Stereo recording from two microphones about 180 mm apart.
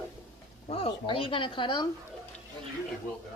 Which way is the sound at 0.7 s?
30° left (ahead or behind).